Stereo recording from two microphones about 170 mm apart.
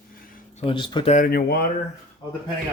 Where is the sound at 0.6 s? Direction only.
30° left (ahead or behind).